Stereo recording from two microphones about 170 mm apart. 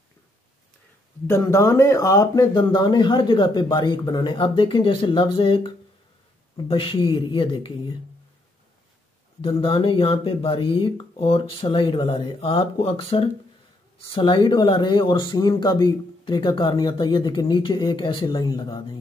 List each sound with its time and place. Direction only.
1.2 s speech: 15° left (ahead or behind)
9.4 s speech: 30° left (ahead or behind)